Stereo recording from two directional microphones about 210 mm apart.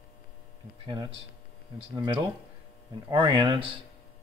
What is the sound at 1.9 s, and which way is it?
Speech, 20° right (ahead or behind).